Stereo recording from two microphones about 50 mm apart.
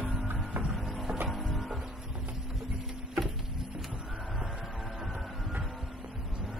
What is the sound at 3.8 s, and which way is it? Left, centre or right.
Music, centre.